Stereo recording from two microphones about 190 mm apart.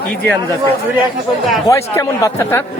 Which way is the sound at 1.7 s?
15° left (ahead or behind).